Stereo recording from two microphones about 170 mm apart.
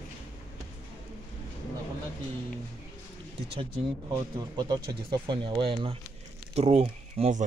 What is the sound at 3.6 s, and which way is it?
Speech, 30° right (ahead or behind).